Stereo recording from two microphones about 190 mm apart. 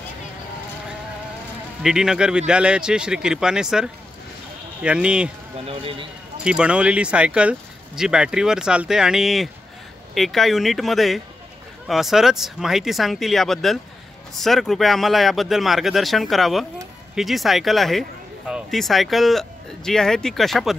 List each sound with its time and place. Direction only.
1.8 s speech: 5° right (ahead or behind)
5.7 s a man's voice: 30° right (ahead or behind)
6.4 s speech: 5° right (ahead or behind)